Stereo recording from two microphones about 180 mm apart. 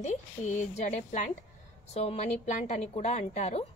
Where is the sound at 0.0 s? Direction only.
40° left (ahead or behind).